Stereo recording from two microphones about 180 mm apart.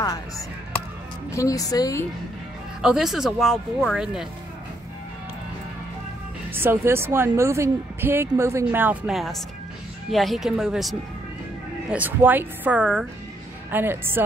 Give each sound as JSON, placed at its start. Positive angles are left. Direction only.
{"t": 1.3, "sound": "speech", "side_deg": 20}
{"t": 2.8, "sound": "speech", "side_deg": -5}
{"t": 6.5, "sound": "a woman's voice", "side_deg": -10}